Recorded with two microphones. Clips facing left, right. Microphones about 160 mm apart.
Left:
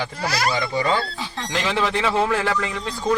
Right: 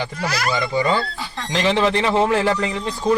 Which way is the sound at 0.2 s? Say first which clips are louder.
Left 1 dB; 35° left (ahead or behind).